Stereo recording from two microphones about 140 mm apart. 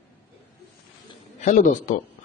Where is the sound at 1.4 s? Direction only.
60° left (ahead or behind).